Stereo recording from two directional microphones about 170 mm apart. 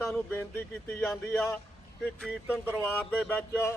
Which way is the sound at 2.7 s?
10° left (ahead or behind).